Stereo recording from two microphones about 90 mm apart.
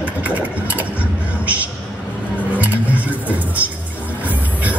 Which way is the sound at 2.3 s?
15° right (ahead or behind).